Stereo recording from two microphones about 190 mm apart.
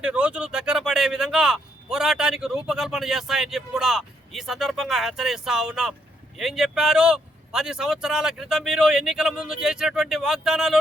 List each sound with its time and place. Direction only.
0.0 s speech: 5° right (ahead or behind)